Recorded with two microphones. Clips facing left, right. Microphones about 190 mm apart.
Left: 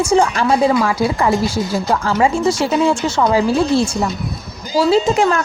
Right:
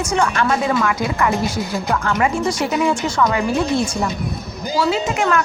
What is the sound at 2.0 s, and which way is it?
A woman's voice, 25° left (ahead or behind).